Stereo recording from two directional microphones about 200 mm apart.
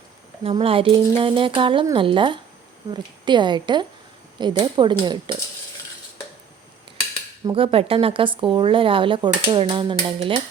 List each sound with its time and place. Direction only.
0.4 s speech: 30° right (ahead or behind)
7.4 s speech: 25° right (ahead or behind)